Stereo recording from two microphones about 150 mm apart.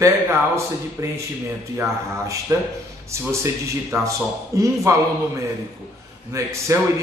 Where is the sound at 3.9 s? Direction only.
20° right (ahead or behind).